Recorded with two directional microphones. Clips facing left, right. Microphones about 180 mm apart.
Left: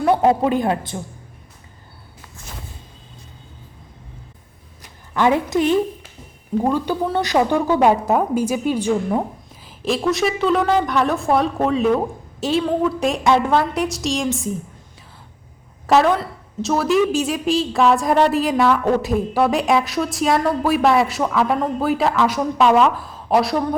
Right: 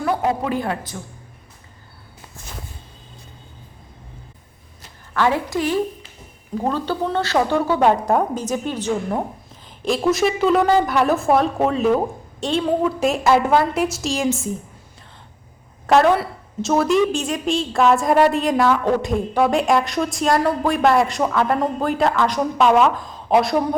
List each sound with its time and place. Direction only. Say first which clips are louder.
0.0 s speech: left 5 dB; 25° left (ahead or behind)
4.8 s a sound: left 2 dB; 15° left (ahead or behind)
6.6 s a woman's voice: left 2 dB; 15° left (ahead or behind)
15.9 s a woman's voice: right 1 dB; centre (ahead or behind)